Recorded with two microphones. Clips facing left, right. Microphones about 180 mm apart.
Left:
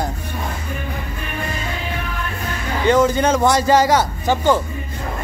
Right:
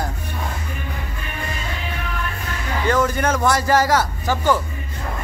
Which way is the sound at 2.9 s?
20° left (ahead or behind).